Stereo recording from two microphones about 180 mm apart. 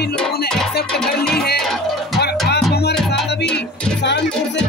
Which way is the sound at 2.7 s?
65° left (ahead or behind).